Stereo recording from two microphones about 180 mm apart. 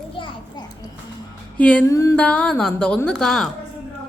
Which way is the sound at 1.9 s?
15° left (ahead or behind).